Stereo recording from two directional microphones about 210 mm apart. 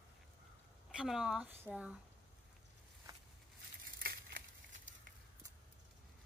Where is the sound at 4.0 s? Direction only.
45° right (ahead or behind).